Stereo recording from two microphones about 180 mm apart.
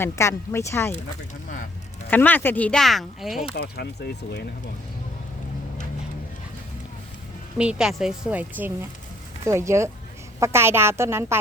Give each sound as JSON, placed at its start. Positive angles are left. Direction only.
{"t": 0.0, "sound": "speech", "side_deg": 15}
{"t": 2.0, "sound": "speech", "side_deg": 10}
{"t": 3.5, "sound": "speech", "side_deg": 65}
{"t": 7.6, "sound": "a woman's voice", "side_deg": -5}